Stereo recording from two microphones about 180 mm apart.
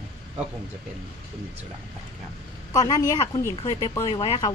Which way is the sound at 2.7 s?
20° left (ahead or behind).